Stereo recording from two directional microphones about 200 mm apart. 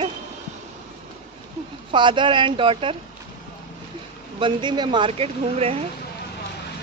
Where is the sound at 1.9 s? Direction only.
25° right (ahead or behind).